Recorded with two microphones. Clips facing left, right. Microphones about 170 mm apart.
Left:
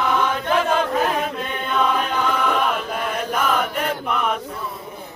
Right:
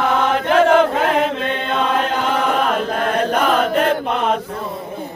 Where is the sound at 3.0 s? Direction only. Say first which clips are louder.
Right 5 dB; 80° right.